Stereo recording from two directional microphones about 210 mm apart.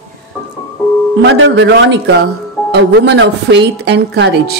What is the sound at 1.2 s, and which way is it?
A woman's voice, 55° right (ahead or behind).